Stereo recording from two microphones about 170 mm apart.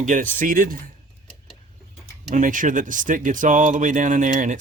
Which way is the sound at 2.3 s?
50° right (ahead or behind).